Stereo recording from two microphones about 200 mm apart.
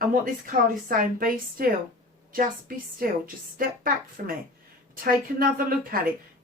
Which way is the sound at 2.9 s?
45° right (ahead or behind).